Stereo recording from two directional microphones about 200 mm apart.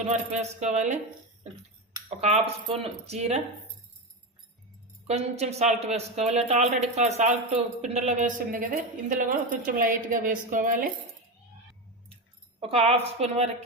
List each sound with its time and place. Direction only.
0.0 s speech: 35° right (ahead or behind)
2.0 s speech: 30° right (ahead or behind)
5.0 s speech: 30° right (ahead or behind)
12.5 s speech: 30° right (ahead or behind)